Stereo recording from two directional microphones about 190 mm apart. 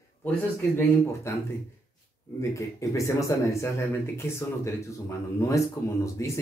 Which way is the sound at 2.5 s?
15° left (ahead or behind).